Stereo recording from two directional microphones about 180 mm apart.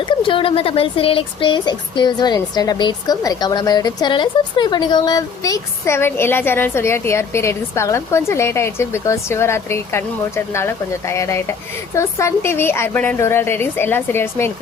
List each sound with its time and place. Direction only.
0.0 s speech: 30° left (ahead or behind)